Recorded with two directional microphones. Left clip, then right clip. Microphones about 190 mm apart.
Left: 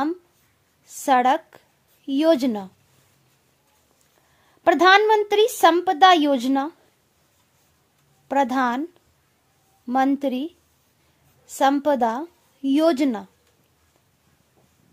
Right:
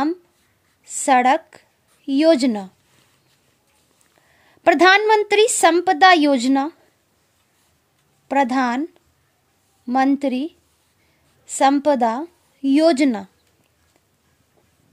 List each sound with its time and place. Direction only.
1.0 s a woman's voice: 15° right (ahead or behind)
4.5 s a woman's voice: 20° right (ahead or behind)
8.3 s speech: 15° right (ahead or behind)
11.5 s a woman's voice: 10° right (ahead or behind)